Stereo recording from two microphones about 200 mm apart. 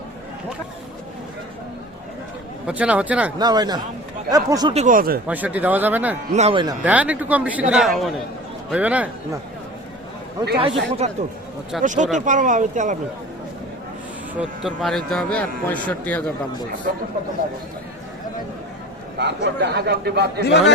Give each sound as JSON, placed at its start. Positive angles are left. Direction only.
{"t": 2.6, "sound": "speech", "side_deg": -5}
{"t": 3.3, "sound": "speech", "side_deg": -20}
{"t": 4.7, "sound": "speech", "side_deg": -35}
{"t": 5.3, "sound": "speech", "side_deg": -10}
{"t": 6.3, "sound": "speech", "side_deg": -30}
{"t": 6.8, "sound": "a man's voice", "side_deg": -5}
{"t": 10.6, "sound": "speech", "side_deg": -30}
{"t": 14.3, "sound": "a man's voice", "side_deg": 0}
{"t": 19.2, "sound": "speech", "side_deg": -55}
{"t": 20.4, "sound": "a man's voice", "side_deg": 60}